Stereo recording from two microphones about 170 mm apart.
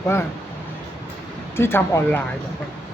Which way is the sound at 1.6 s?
15° left (ahead or behind).